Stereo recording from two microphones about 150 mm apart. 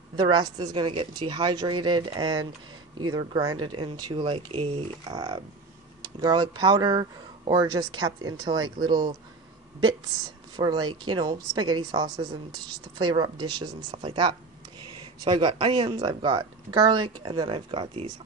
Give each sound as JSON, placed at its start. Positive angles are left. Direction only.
{"t": 0.1, "sound": "speech", "side_deg": -30}
{"t": 10.5, "sound": "speech", "side_deg": -30}